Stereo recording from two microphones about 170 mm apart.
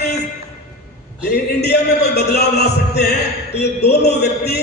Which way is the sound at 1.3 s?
70° left (ahead or behind).